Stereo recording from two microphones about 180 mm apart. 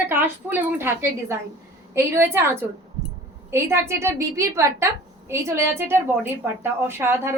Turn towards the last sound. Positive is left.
turn(degrees=-15)  # may be behind; listen again after turning